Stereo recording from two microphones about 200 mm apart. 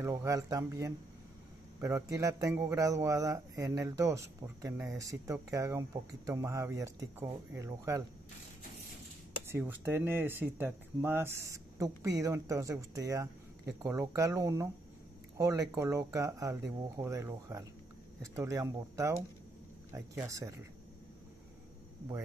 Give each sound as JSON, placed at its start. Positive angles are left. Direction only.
{"t": 0.0, "sound": "a man's voice", "side_deg": -15}
{"t": 9.5, "sound": "a man's voice", "side_deg": -10}